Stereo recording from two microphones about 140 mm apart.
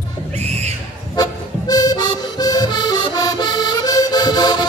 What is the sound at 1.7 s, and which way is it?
Accordion, 30° left (ahead or behind).